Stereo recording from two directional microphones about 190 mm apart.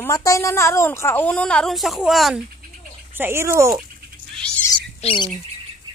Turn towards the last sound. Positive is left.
turn(degrees=25)  # may be behind; listen again after turning